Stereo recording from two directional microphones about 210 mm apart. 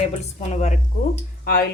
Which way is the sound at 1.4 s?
45° left (ahead or behind).